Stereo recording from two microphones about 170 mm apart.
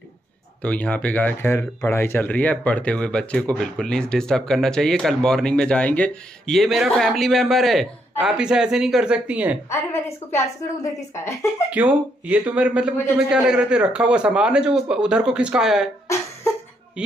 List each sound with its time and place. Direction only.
0.6 s speech: 5° left (ahead or behind); by 9.6 s 10° right (ahead or behind)
9.7 s a woman's voice: 15° left (ahead or behind)
11.7 s speech: 10° right (ahead or behind)